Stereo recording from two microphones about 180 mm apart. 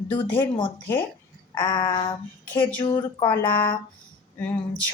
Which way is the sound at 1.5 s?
25° left (ahead or behind).